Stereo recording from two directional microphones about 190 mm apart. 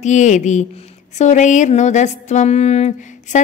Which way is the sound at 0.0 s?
40° left (ahead or behind).